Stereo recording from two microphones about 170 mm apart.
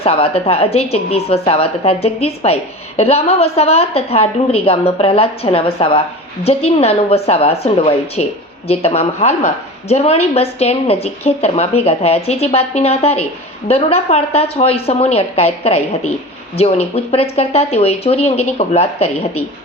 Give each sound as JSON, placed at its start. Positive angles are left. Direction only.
{"t": 0.0, "sound": "speech", "side_deg": 35}